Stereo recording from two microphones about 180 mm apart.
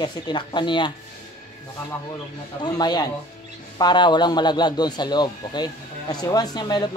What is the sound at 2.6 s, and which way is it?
Speech, 25° left (ahead or behind).